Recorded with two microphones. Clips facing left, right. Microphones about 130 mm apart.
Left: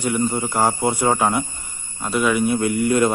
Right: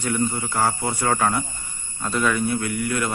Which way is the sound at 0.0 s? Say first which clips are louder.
Left 3 dB; 15° left (ahead or behind).